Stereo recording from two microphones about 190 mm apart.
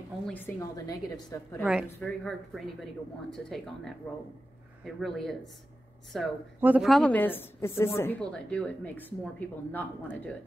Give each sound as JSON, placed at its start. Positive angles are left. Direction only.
{"t": 0.3, "sound": "a woman's voice", "side_deg": 15}
{"t": 1.6, "sound": "speech", "side_deg": -5}
{"t": 1.9, "sound": "a woman's voice", "side_deg": 10}